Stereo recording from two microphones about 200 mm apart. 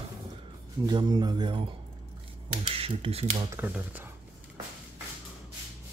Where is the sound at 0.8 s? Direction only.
20° right (ahead or behind).